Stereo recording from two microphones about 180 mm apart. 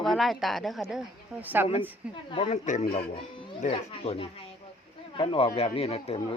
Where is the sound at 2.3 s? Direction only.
30° left (ahead or behind).